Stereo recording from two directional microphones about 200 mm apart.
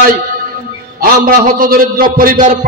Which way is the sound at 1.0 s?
45° right (ahead or behind).